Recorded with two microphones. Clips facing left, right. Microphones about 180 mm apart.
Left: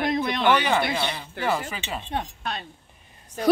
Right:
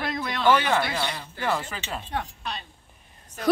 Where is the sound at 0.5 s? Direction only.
Centre (ahead or behind).